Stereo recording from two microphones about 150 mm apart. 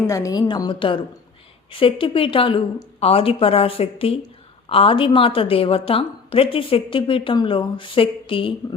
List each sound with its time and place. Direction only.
0.1 s a woman's voice: 25° left (ahead or behind)